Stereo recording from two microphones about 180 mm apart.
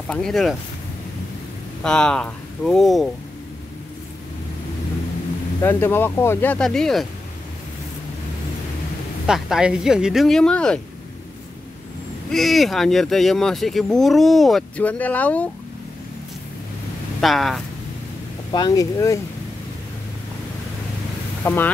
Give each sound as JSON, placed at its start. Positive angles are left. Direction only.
{"t": 0.1, "sound": "speech", "side_deg": 0}
{"t": 1.8, "sound": "speech", "side_deg": 5}
{"t": 5.6, "sound": "speech", "side_deg": 15}
{"t": 9.2, "sound": "speech", "side_deg": -5}
{"t": 12.3, "sound": "speech", "side_deg": 0}
{"t": 17.2, "sound": "speech", "side_deg": 0}
{"t": 18.5, "sound": "speech", "side_deg": 20}
{"t": 21.4, "sound": "speech", "side_deg": 15}